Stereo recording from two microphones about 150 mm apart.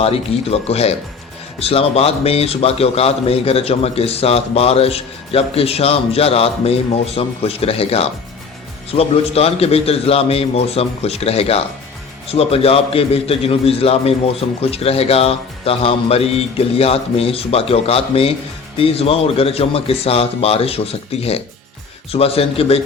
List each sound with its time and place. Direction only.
0.0 s a man's voice: 40° left (ahead or behind)